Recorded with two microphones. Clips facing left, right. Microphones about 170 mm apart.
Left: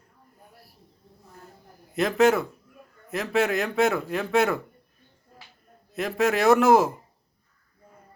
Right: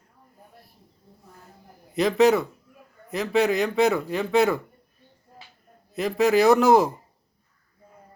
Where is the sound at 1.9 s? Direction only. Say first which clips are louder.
Right 2 dB; centre (ahead or behind).